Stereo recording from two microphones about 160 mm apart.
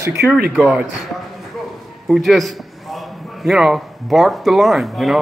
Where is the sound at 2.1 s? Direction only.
Centre (ahead or behind).